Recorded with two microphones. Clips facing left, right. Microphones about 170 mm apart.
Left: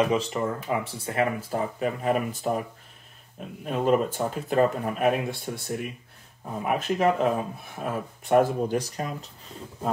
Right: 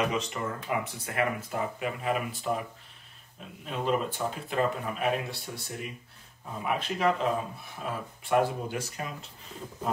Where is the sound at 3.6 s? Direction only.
45° left (ahead or behind).